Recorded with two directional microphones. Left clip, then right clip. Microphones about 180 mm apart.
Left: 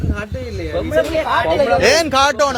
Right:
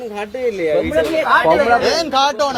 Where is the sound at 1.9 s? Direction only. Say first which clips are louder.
Left 2 dB; 45° left (ahead or behind).